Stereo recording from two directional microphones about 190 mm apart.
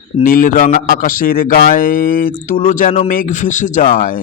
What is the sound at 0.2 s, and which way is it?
Speech, 45° left (ahead or behind).